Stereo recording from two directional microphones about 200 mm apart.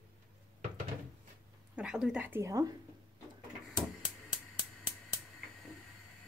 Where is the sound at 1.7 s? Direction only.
5° right (ahead or behind).